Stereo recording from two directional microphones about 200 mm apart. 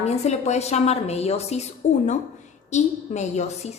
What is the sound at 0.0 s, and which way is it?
A woman's voice, 35° left (ahead or behind).